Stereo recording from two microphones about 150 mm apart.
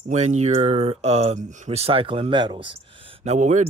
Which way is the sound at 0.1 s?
50° right (ahead or behind).